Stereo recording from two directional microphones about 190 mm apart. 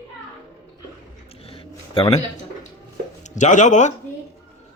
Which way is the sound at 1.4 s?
30° left (ahead or behind).